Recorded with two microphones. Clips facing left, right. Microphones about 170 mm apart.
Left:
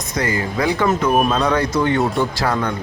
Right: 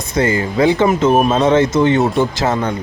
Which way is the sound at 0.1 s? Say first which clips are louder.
Right 5 dB; 25° right (ahead or behind).